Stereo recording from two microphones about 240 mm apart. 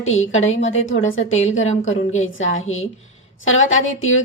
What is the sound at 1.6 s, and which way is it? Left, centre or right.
Speech, left.